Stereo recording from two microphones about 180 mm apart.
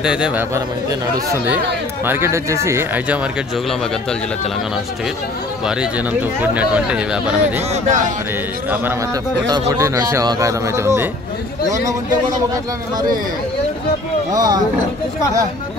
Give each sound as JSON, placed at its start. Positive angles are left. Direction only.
{"t": 0.0, "sound": "a man's voice", "side_deg": -5}
{"t": 6.4, "sound": "speech", "side_deg": -5}
{"t": 7.7, "sound": "speech", "side_deg": -45}
{"t": 9.5, "sound": "a man's voice", "side_deg": -15}
{"t": 14.3, "sound": "speech", "side_deg": -20}